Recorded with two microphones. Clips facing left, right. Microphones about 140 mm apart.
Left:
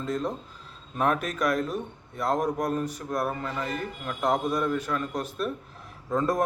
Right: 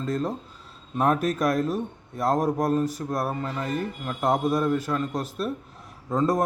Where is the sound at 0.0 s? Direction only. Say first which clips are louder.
Right 2 dB; 40° right (ahead or behind).